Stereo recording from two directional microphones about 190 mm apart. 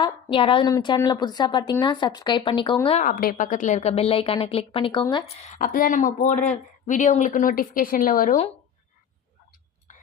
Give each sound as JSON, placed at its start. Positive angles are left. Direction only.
{"t": 0.0, "sound": "a woman's voice", "side_deg": 25}
{"t": 3.0, "sound": "a woman's voice", "side_deg": 50}